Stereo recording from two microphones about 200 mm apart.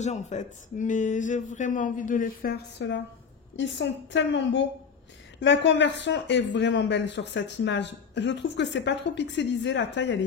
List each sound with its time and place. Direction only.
0.0 s speech: 35° left (ahead or behind); by 10.2 s 60° left (ahead or behind)